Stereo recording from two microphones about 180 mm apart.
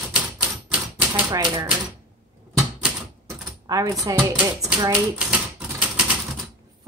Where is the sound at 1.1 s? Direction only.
10° right (ahead or behind).